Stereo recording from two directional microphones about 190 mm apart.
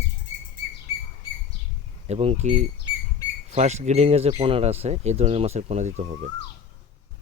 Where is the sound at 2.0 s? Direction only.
35° right (ahead or behind).